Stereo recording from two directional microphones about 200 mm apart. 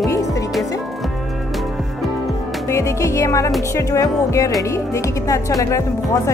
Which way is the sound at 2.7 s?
15° left (ahead or behind).